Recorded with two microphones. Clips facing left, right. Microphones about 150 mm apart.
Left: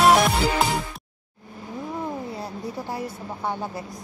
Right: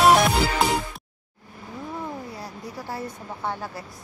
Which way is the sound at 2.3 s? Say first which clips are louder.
Left 4 dB; 25° left (ahead or behind).